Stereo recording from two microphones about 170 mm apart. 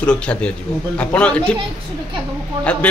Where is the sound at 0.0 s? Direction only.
5° left (ahead or behind).